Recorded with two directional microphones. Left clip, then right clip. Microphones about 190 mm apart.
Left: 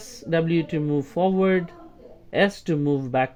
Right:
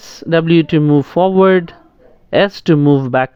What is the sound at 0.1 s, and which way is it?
Speech, 35° right (ahead or behind).